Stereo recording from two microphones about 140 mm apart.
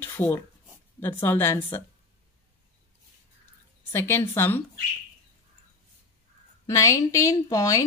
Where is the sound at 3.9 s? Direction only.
15° left (ahead or behind).